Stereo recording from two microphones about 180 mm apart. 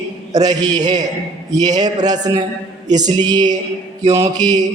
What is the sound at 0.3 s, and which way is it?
A man's voice, 20° right (ahead or behind).